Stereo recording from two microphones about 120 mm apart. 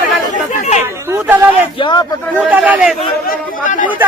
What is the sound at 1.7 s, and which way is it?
Speech, 40° left (ahead or behind).